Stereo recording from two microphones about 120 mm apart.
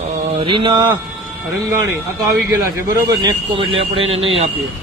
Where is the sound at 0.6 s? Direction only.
40° right (ahead or behind); by 4.5 s 55° right (ahead or behind).